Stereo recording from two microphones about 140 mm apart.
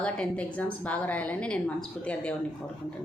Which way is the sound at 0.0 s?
10° left (ahead or behind).